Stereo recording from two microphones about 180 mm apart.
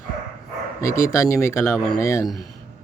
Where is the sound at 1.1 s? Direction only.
15° left (ahead or behind).